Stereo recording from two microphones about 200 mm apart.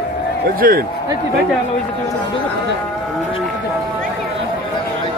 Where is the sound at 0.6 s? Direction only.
45° right (ahead or behind).